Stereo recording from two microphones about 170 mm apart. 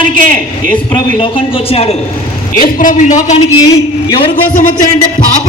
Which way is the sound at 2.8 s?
50° left (ahead or behind).